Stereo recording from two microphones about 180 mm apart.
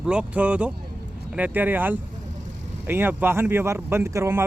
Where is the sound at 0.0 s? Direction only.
5° right (ahead or behind).